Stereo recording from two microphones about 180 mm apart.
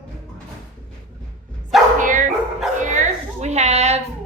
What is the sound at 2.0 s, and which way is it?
Dog, 45° right (ahead or behind).